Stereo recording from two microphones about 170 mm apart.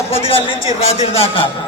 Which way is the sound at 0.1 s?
35° left (ahead or behind).